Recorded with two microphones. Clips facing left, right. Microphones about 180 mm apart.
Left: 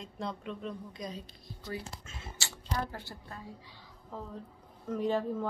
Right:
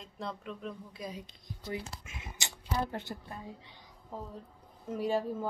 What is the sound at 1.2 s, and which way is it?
Speech, 15° right (ahead or behind).